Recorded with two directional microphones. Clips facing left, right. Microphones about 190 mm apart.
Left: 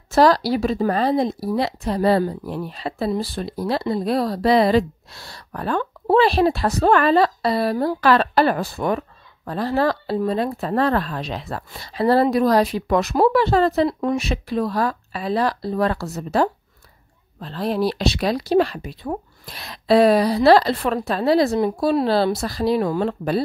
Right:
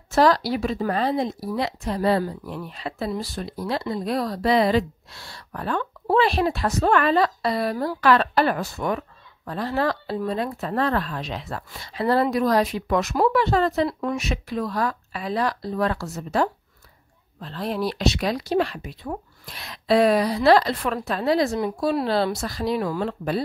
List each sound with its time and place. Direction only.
0.1 s speech: 35° left (ahead or behind)